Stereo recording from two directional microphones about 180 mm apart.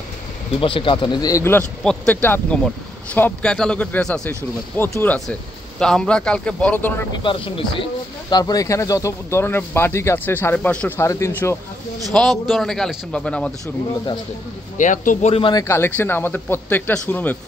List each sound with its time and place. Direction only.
0.6 s speech: 30° left (ahead or behind); by 7.1 s 10° left (ahead or behind)
7.2 s speech: 30° left (ahead or behind)
12.1 s a man's voice: centre (ahead or behind)
14.8 s a man's voice: 45° left (ahead or behind)
15.6 s speech: 15° left (ahead or behind)